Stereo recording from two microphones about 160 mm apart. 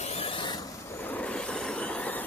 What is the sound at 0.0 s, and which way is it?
Vehicle, 40° left (ahead or behind).